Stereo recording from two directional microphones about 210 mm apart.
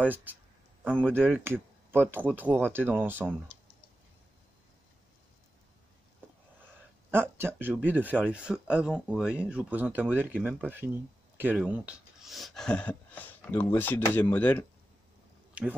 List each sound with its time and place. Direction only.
0.8 s speech: 5° left (ahead or behind)
1.1 s speech: 10° right (ahead or behind)
7.1 s speech: 10° right (ahead or behind); by 14.7 s 10° left (ahead or behind)